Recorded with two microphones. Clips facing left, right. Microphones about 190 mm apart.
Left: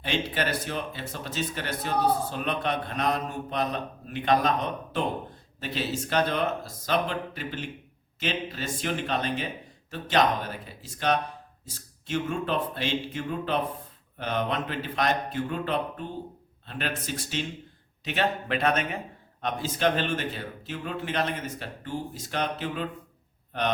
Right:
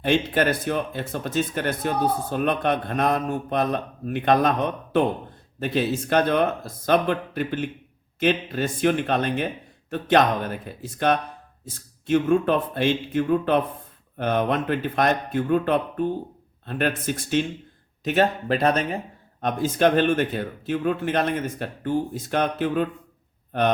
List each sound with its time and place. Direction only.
0.0 s speech: 50° right (ahead or behind); by 18.9 s 35° right (ahead or behind)
19.4 s speech: 50° right (ahead or behind)